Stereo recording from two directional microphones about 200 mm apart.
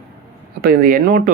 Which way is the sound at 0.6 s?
45° right (ahead or behind).